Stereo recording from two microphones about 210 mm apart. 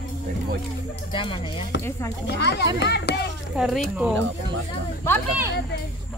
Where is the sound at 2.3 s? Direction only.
55° left (ahead or behind).